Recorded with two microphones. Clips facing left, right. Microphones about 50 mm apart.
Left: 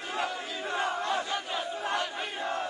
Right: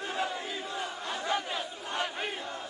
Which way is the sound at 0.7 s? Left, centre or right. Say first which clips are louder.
Left 11 dB; left.